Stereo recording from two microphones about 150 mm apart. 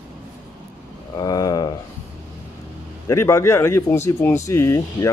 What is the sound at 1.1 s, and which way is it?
Speech, 25° left (ahead or behind).